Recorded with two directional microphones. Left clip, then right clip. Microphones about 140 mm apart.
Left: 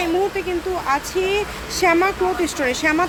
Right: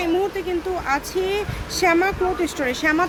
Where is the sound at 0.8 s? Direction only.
5° right (ahead or behind).